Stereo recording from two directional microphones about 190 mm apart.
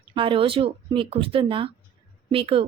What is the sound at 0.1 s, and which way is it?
A woman's voice, 25° right (ahead or behind).